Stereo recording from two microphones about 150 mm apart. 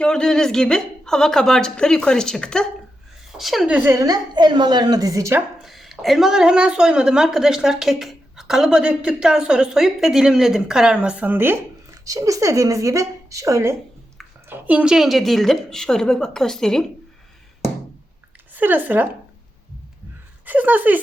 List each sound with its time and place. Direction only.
0.0 s a woman's voice: 5° left (ahead or behind)
3.9 s a woman's voice: 25° right (ahead or behind)
5.6 s a woman's voice: centre (ahead or behind)
18.5 s speech: 15° right (ahead or behind)
20.4 s speech: 10° right (ahead or behind)